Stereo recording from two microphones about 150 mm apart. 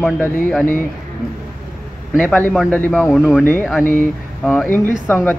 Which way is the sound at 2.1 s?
10° left (ahead or behind).